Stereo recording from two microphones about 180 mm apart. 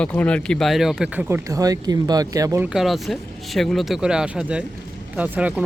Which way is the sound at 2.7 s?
Centre (ahead or behind).